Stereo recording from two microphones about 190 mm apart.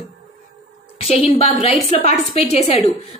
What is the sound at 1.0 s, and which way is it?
A woman's voice, 30° left (ahead or behind).